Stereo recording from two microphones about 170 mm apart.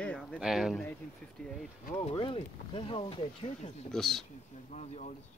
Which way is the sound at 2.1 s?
30° left (ahead or behind).